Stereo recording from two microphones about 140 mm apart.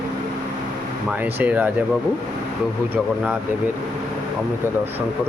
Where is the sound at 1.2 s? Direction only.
10° right (ahead or behind).